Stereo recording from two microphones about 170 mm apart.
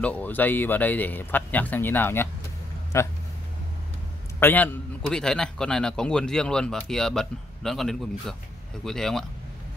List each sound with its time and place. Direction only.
0.0 s speech: 10° left (ahead or behind)
4.4 s a man's voice: 10° left (ahead or behind)